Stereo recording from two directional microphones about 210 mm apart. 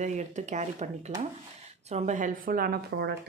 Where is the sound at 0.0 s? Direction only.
35° right (ahead or behind).